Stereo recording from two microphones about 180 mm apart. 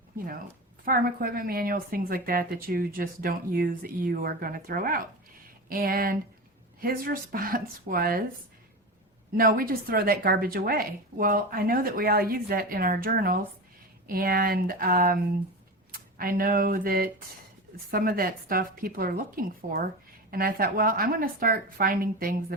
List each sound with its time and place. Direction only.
0.9 s a woman's voice: 55° right (ahead or behind)
9.3 s a woman's voice: 55° right (ahead or behind)